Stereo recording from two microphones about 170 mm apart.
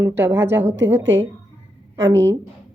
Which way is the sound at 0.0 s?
15° right (ahead or behind).